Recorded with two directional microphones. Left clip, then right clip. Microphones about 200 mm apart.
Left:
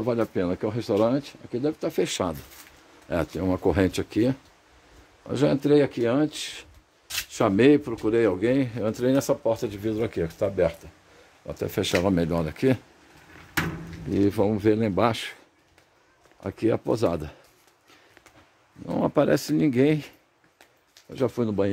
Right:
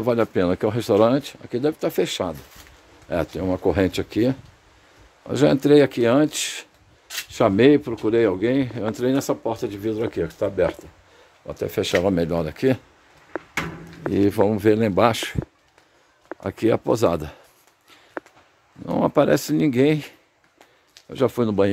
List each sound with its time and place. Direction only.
0.0 s speech: 15° right (ahead or behind)
2.0 s speech: 5° left (ahead or behind); by 6.7 s 25° right (ahead or behind)
7.2 s speech: 10° right (ahead or behind)
14.1 s speech: 10° right (ahead or behind)
16.3 s speech: 15° right (ahead or behind)
18.9 s speech: 15° right (ahead or behind)
21.1 s speech: 25° right (ahead or behind)